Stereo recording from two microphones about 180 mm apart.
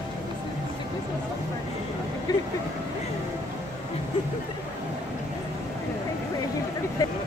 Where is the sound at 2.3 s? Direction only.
20° left (ahead or behind).